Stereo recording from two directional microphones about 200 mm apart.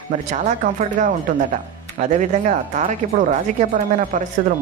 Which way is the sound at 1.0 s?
40° right (ahead or behind).